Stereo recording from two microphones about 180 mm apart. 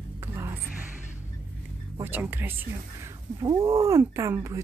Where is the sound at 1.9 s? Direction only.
10° right (ahead or behind).